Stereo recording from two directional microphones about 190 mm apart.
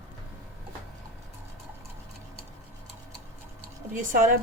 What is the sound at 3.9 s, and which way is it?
Speech, 45° right (ahead or behind).